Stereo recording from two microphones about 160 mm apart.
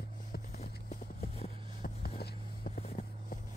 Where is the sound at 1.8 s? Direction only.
70° left (ahead or behind).